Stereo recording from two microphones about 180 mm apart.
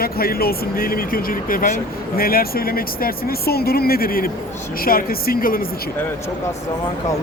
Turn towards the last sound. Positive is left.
turn(degrees=55)  # may be behind; listen again after turning